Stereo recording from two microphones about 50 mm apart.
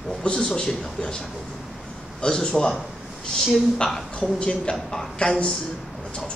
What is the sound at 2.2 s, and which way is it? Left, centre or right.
Speech, centre.